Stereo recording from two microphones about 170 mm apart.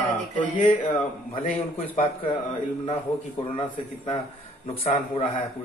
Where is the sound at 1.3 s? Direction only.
50° left (ahead or behind).